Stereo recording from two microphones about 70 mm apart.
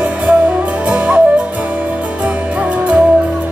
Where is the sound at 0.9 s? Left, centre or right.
Right.